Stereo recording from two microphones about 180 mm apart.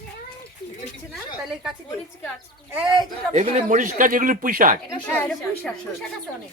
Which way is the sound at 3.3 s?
40° right (ahead or behind).